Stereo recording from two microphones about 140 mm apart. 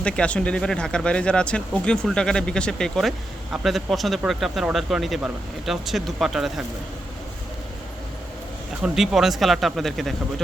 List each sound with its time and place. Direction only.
0.0 s speech: 5° left (ahead or behind)
8.8 s speech: centre (ahead or behind)